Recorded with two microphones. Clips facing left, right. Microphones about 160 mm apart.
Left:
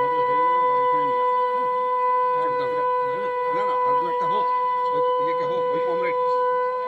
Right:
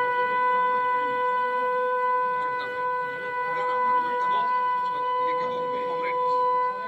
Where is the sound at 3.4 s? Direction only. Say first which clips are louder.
Even; 20° left (ahead or behind).